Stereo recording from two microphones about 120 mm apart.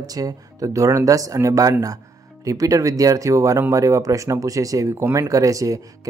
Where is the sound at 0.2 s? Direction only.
30° right (ahead or behind).